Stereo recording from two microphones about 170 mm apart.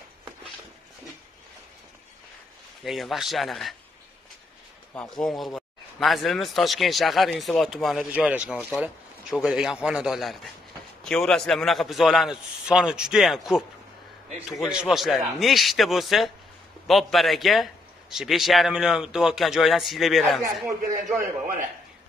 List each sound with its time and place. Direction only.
2.8 s speech: centre (ahead or behind)
4.9 s speech: 5° left (ahead or behind)
21.2 s a man's voice: 50° right (ahead or behind)